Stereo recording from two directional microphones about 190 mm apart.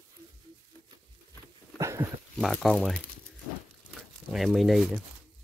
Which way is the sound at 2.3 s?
Centre (ahead or behind).